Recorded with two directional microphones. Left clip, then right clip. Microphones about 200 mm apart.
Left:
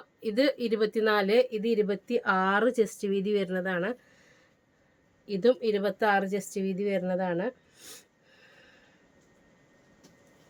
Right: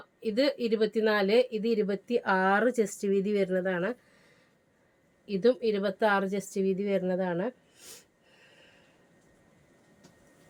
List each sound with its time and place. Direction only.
0.2 s a woman's voice: 20° left (ahead or behind)
5.2 s speech: 15° left (ahead or behind)